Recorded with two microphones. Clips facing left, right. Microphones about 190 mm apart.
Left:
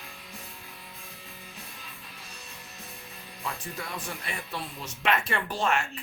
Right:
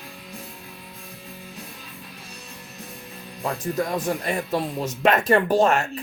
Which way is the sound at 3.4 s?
40° right (ahead or behind).